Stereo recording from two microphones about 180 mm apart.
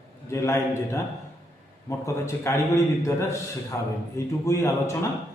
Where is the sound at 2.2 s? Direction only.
15° left (ahead or behind).